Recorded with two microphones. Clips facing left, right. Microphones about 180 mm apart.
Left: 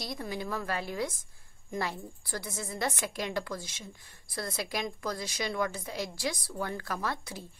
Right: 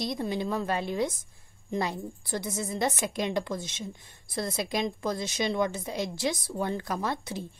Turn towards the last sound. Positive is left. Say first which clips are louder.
# right 4 dB
turn(degrees=-20)  # may be behind; listen again after turning